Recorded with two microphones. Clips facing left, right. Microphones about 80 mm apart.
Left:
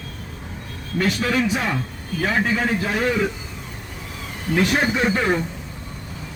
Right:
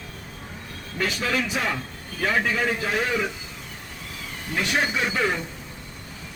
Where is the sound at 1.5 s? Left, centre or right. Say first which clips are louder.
Left 3 dB; centre.